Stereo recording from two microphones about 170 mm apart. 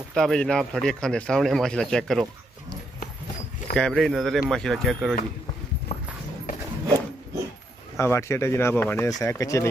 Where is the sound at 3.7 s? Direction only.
5° left (ahead or behind).